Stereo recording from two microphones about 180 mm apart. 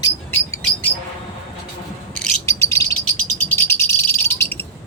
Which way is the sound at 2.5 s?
15° left (ahead or behind).